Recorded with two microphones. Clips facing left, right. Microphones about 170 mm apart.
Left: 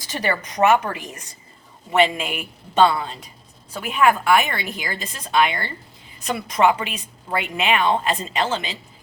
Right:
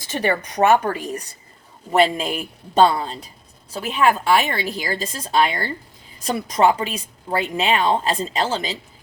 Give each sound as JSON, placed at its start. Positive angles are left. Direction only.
{"t": 0.2, "sound": "a woman's voice", "side_deg": -30}